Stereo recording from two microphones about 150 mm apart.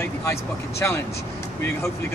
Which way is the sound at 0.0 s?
15° left (ahead or behind).